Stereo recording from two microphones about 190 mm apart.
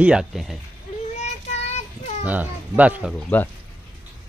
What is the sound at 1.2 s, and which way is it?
Child singing, 35° left (ahead or behind).